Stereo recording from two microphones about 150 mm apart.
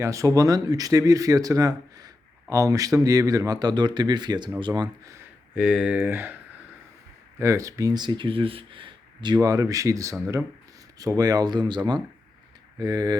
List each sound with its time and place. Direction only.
0.0 s speech: 20° right (ahead or behind)
5.5 s speech: 5° right (ahead or behind)
7.3 s speech: 20° right (ahead or behind)